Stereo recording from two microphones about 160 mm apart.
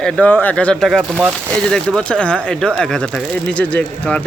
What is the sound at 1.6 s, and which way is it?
Speech, 5° left (ahead or behind).